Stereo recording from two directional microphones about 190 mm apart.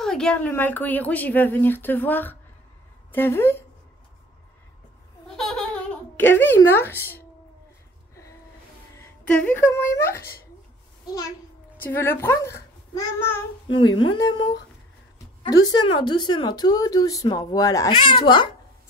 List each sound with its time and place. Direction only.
0.0 s a woman's voice: 5° left (ahead or behind)
5.3 s laughter: centre (ahead or behind)
6.1 s speech: 10° left (ahead or behind)
8.9 s a woman's voice: 5° left (ahead or behind)
13.7 s speech: 25° left (ahead or behind)
15.6 s speech: 20° left (ahead or behind)